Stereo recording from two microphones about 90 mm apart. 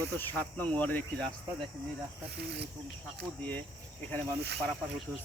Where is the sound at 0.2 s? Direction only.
15° left (ahead or behind).